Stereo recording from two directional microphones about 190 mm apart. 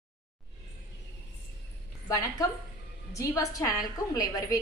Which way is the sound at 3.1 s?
15° left (ahead or behind).